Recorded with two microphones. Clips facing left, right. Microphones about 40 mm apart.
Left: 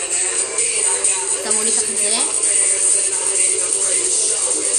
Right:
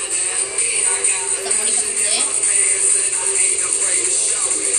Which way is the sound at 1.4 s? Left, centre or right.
Right.